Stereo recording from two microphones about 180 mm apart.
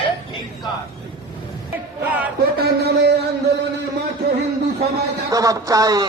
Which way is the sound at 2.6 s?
65° right (ahead or behind).